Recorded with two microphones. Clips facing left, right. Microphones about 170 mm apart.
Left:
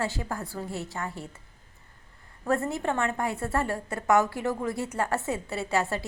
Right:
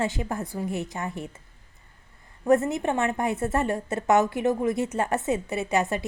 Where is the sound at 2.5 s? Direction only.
20° right (ahead or behind).